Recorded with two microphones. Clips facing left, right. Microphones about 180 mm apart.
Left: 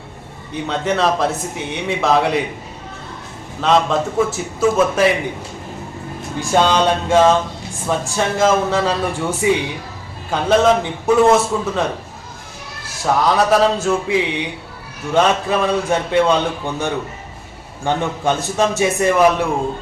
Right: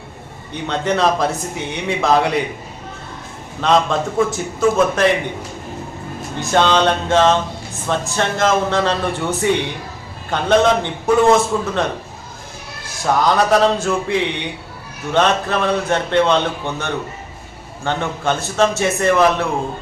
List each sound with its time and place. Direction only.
0.5 s speech: 5° left (ahead or behind)
3.6 s speech: centre (ahead or behind)
6.4 s a man's voice: 10° left (ahead or behind)
13.2 s a man's voice: 5° left (ahead or behind)